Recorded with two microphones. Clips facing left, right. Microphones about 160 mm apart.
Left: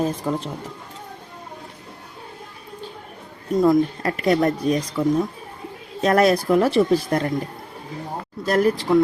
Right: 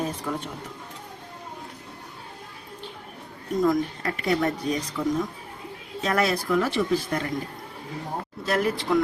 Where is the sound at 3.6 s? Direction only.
35° left (ahead or behind).